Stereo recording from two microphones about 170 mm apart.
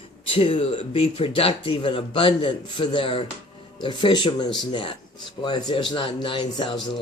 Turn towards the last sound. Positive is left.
turn(degrees=30)  # may be behind; listen again after turning